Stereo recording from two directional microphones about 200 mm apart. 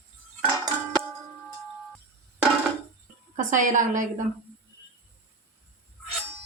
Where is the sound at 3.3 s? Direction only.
40° right (ahead or behind).